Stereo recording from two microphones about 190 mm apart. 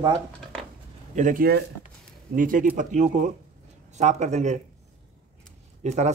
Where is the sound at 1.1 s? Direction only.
45° right (ahead or behind).